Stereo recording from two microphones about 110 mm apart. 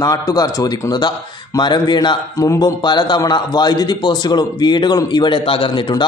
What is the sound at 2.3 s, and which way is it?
Speech, 30° left (ahead or behind).